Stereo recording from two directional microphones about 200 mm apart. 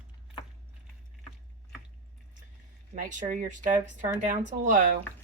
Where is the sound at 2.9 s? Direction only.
40° right (ahead or behind).